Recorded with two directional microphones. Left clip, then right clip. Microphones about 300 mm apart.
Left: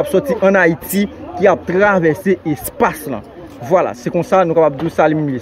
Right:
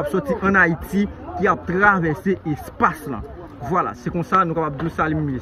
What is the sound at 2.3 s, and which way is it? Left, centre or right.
A man's voice, centre.